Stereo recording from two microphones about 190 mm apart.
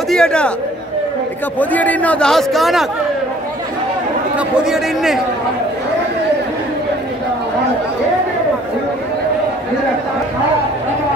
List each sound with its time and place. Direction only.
0.1 s a man's voice: 5° left (ahead or behind)
1.6 s a man's voice: 10° left (ahead or behind)
4.4 s a man's voice: 5° right (ahead or behind)